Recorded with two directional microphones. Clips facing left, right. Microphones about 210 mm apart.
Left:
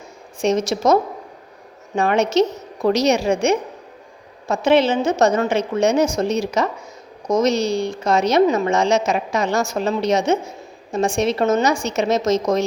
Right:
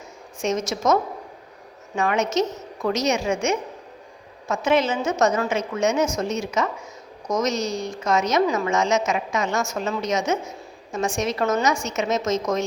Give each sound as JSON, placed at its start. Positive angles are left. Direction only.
{"t": 0.4, "sound": "a woman's voice", "side_deg": 30}
{"t": 2.0, "sound": "a woman's voice", "side_deg": 35}